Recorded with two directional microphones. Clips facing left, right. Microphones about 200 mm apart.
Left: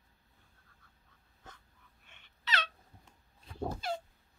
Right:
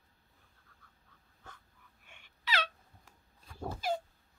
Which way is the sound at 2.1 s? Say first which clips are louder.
Right 2 dB; 10° right (ahead or behind).